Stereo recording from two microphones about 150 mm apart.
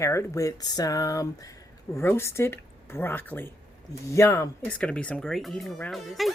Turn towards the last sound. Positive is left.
turn(degrees=0)  # may be behind; listen again after turning